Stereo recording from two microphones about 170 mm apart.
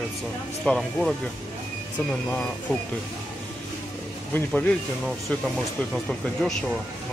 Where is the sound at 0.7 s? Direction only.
Centre (ahead or behind).